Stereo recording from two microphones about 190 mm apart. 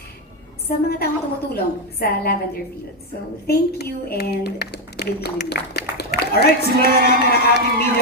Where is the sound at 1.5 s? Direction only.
55° left (ahead or behind).